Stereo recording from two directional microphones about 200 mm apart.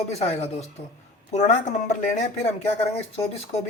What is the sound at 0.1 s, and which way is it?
Speech, 30° left (ahead or behind).